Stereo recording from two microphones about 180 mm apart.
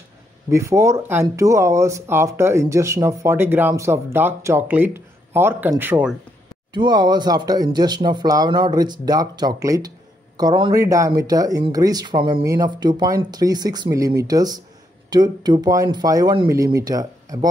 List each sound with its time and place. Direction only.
0.5 s speech: 15° right (ahead or behind)
6.7 s speech: 25° right (ahead or behind)